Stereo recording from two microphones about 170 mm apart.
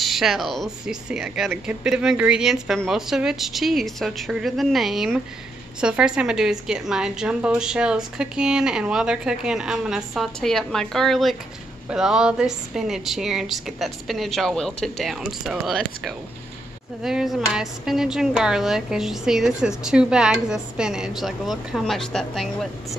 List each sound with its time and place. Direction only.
0.0 s speech: centre (ahead or behind)